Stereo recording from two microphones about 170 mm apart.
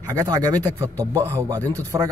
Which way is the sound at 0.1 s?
20° right (ahead or behind).